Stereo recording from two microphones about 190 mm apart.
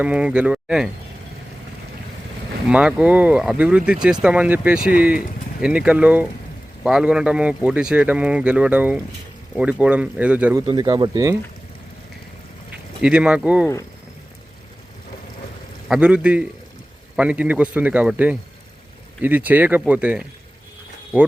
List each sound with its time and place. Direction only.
0.0 s speech: 5° right (ahead or behind)
2.6 s speech: 5° right (ahead or behind)
4.8 s speech: 50° left (ahead or behind)
5.6 s a man's voice: 5° right (ahead or behind)
10.7 s speech: 20° right (ahead or behind)
13.0 s speech: 5° right (ahead or behind)
15.9 s a man's voice: 5° right (ahead or behind)